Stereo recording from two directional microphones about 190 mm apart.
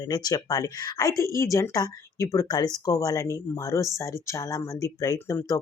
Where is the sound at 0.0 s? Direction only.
20° left (ahead or behind).